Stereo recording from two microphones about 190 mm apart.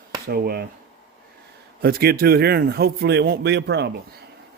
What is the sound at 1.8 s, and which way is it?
Speech, 55° right (ahead or behind).